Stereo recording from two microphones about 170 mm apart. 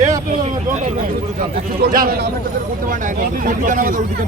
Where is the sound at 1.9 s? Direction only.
55° right (ahead or behind).